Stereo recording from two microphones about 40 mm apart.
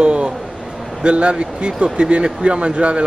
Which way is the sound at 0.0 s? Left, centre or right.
Right.